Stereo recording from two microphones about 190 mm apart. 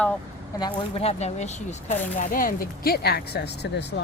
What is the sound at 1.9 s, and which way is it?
Speech, 45° left (ahead or behind).